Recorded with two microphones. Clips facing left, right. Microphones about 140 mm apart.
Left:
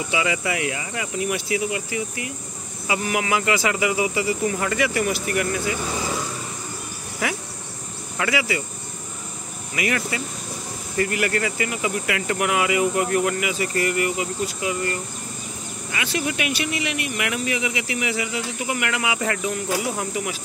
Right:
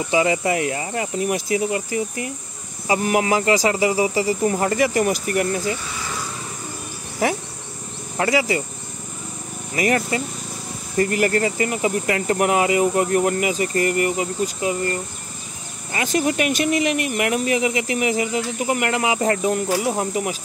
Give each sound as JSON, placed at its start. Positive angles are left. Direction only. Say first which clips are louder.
{"t": 0.1, "sound": "speech", "louder": "right 6 dB", "side_deg": -35}
{"t": 7.2, "sound": "speech", "louder": "right 6 dB", "side_deg": -40}
{"t": 9.8, "sound": "speech", "louder": "right 5 dB", "side_deg": -40}